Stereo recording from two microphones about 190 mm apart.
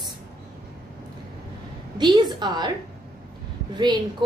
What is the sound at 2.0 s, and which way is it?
Speech, 20° right (ahead or behind).